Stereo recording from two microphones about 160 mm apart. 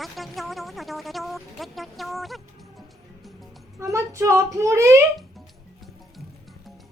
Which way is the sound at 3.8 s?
20° right (ahead or behind).